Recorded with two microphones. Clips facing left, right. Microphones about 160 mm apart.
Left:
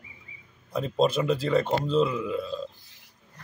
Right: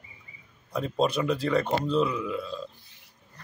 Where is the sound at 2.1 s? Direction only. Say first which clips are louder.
Left 2 dB; 20° left (ahead or behind).